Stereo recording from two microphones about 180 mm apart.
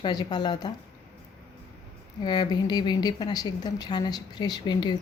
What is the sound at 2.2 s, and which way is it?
A woman's voice, 25° left (ahead or behind).